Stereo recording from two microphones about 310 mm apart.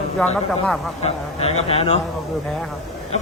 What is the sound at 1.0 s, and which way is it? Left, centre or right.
Speech, centre.